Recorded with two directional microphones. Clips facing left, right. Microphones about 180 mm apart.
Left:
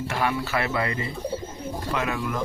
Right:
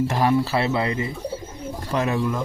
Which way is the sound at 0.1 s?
35° right (ahead or behind).